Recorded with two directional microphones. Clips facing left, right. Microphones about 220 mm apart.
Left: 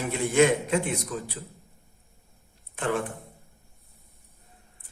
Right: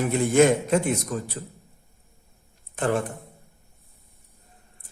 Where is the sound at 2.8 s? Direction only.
40° right (ahead or behind).